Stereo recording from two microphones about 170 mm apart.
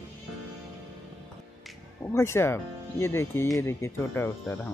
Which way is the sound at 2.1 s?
15° left (ahead or behind).